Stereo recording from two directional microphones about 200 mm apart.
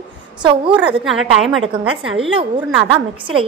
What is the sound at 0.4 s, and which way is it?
Speech, 25° right (ahead or behind).